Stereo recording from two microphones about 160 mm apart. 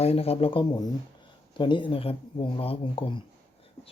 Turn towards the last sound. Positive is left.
turn(degrees=35)  # may be behind; listen again after turning